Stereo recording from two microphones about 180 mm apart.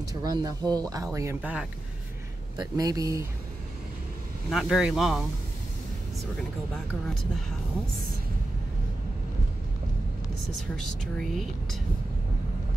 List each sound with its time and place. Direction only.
0.1 s speech: 20° right (ahead or behind)
2.5 s speech: 20° right (ahead or behind)
4.5 s speech: centre (ahead or behind)
10.9 s speech: centre (ahead or behind)